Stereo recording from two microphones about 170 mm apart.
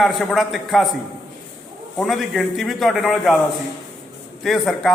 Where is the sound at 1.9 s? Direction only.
Centre (ahead or behind).